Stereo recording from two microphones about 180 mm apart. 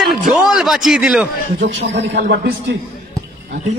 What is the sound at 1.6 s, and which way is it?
Speech, 70° right (ahead or behind).